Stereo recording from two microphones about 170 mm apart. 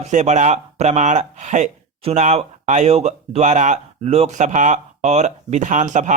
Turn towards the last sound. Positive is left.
turn(degrees=-45)  # may be behind; listen again after turning